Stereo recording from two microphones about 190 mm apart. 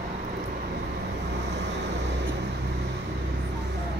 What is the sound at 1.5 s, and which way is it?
Vehicle, 65° right (ahead or behind).